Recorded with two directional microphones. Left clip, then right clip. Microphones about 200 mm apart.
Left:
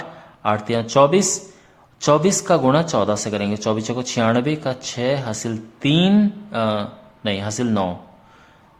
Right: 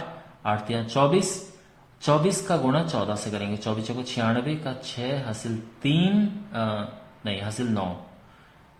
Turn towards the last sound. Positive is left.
turn(degrees=40)  # may be behind; listen again after turning